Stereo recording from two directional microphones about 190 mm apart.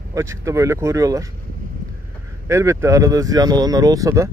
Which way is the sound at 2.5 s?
15° right (ahead or behind).